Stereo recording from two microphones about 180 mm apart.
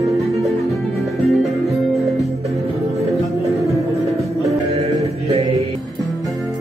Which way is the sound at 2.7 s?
15° right (ahead or behind).